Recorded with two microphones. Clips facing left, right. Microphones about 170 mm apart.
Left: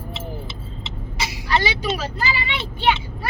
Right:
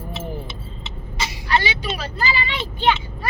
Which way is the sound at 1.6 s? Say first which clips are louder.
Left 3 dB; 40° left (ahead or behind).